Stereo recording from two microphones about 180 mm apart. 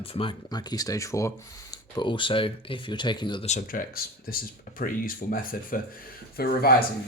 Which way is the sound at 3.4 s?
45° left (ahead or behind).